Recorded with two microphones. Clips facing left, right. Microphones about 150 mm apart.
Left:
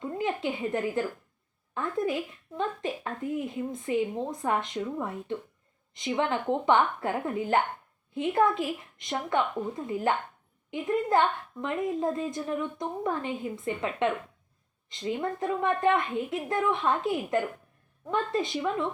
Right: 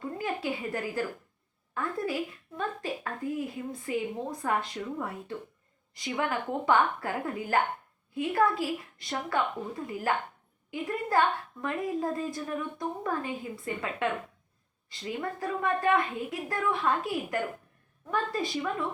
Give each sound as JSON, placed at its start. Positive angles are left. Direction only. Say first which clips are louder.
{"t": 0.2, "sound": "a woman's voice", "louder": "left 4 dB", "side_deg": 20}